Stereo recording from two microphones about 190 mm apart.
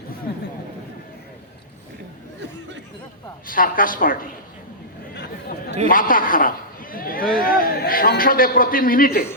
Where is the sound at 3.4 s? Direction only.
45° left (ahead or behind).